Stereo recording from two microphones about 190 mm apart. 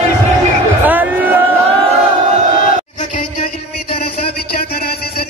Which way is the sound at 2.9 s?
40° left (ahead or behind).